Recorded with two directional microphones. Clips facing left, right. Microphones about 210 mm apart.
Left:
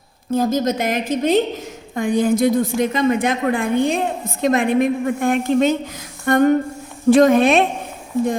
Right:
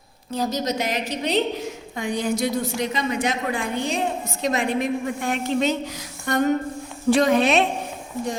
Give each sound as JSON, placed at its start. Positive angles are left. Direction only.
{"t": 0.3, "sound": "a woman's voice", "side_deg": 50}
{"t": 6.2, "sound": "a sound", "side_deg": 55}
{"t": 7.1, "sound": "a woman's voice", "side_deg": 50}